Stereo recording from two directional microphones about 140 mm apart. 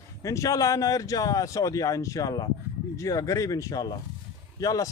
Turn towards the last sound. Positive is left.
turn(degrees=25)  # may be behind; listen again after turning